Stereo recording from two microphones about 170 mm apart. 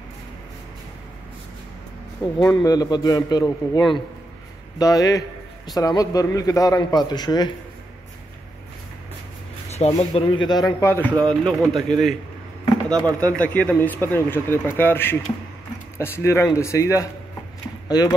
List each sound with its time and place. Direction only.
2.4 s a man's voice: 20° left (ahead or behind)
9.7 s a man's voice: 40° left (ahead or behind); by 12.2 s centre (ahead or behind)
13.2 s a man's voice: 10° left (ahead or behind)